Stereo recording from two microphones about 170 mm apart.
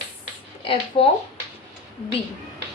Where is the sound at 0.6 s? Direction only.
30° left (ahead or behind).